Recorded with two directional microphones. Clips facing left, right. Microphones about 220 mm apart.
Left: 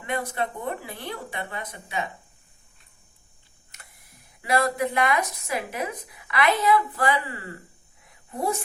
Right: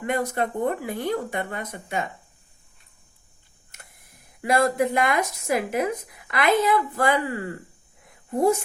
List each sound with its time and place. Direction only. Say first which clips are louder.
0.0 s speech: right 4 dB; 45° right (ahead or behind)
3.7 s speech: right 2 dB; 50° right (ahead or behind)